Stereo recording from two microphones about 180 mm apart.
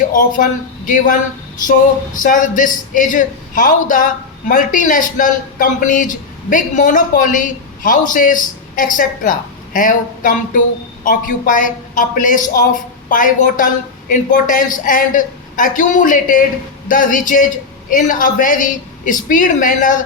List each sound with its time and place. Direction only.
0.1 s a man's voice: 45° left (ahead or behind)